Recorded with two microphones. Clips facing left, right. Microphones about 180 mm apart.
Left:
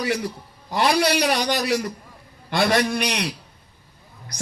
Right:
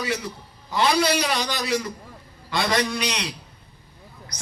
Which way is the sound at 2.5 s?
60° left (ahead or behind).